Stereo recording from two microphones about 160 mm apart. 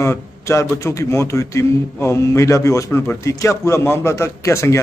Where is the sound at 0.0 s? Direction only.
20° left (ahead or behind).